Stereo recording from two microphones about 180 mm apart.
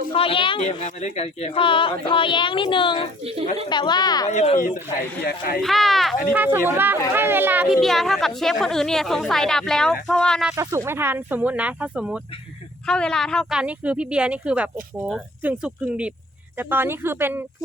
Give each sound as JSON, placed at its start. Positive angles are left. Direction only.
{"t": 0.1, "sound": "a woman's voice", "side_deg": 30}
{"t": 3.2, "sound": "speech", "side_deg": -35}
{"t": 3.7, "sound": "a woman's voice", "side_deg": 25}
{"t": 4.3, "sound": "speech", "side_deg": 40}
{"t": 5.2, "sound": "speech", "side_deg": 55}
{"t": 5.6, "sound": "a woman's voice", "side_deg": 0}
{"t": 6.3, "sound": "speech", "side_deg": -10}
{"t": 7.8, "sound": "a woman's voice", "side_deg": 0}
{"t": 10.5, "sound": "a woman's voice", "side_deg": -15}